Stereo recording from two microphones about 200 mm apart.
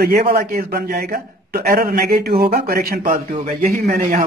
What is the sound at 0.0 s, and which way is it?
A man's voice, 50° right (ahead or behind).